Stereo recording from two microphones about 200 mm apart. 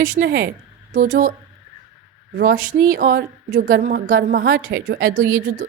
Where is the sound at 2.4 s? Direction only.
40° right (ahead or behind).